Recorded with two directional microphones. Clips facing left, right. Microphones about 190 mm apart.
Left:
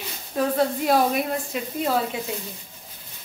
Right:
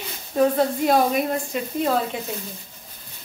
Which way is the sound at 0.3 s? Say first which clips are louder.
Right 3 dB; centre (ahead or behind).